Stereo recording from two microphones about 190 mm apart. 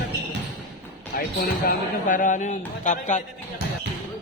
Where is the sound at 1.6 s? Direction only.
45° left (ahead or behind).